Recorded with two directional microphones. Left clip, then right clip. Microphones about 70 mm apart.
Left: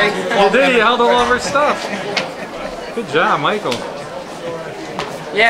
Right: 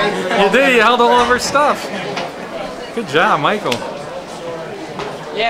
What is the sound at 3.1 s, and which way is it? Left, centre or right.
Speech, centre.